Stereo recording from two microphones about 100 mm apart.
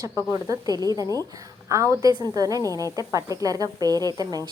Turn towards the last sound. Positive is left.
turn(degrees=-40)  # may be behind; listen again after turning